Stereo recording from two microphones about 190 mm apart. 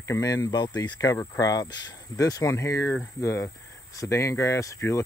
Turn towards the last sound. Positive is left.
turn(degrees=15)  # may be behind; listen again after turning